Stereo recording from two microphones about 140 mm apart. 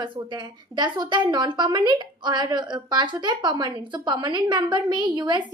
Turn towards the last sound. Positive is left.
turn(degrees=-30)  # may be behind; listen again after turning